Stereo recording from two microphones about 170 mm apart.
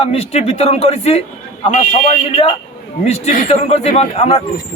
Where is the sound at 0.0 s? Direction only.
35° left (ahead or behind).